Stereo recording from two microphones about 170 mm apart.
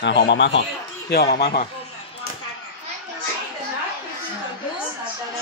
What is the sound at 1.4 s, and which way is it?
Speech, 40° left (ahead or behind).